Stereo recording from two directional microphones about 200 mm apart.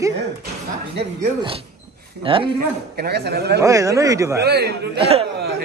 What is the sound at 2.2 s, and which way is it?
Speech, 25° right (ahead or behind).